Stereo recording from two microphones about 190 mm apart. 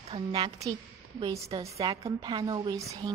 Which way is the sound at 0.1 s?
25° right (ahead or behind).